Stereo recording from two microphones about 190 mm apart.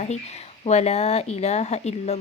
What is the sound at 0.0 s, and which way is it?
Speech, 35° left (ahead or behind).